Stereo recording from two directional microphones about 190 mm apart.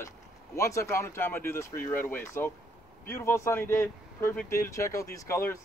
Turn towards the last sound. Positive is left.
turn(degrees=15)  # may be behind; listen again after turning